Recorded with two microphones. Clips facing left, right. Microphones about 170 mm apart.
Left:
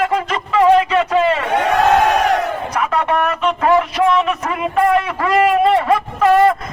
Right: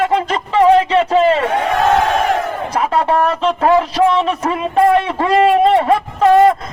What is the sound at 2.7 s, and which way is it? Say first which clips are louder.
A man's voice: right 4 dB; 30° right (ahead or behind).